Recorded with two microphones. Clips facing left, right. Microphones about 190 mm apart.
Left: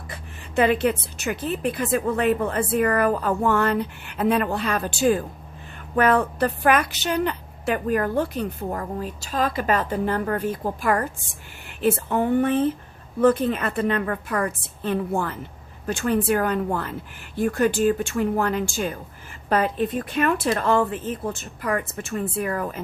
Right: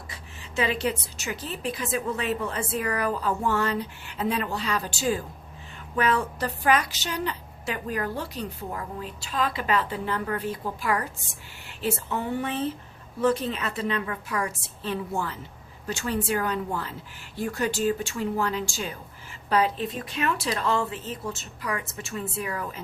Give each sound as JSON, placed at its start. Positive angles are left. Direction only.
{"t": 0.1, "sound": "a woman's voice", "side_deg": 55}